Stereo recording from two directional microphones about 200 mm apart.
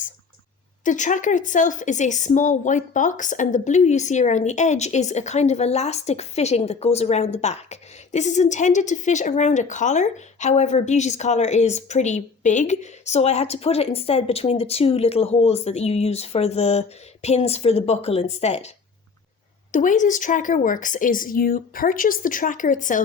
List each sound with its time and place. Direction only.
0.9 s a woman's voice: 40° left (ahead or behind)
19.7 s a woman's voice: 40° left (ahead or behind)